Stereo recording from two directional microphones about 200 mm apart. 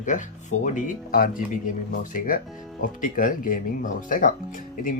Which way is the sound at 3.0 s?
40° left (ahead or behind).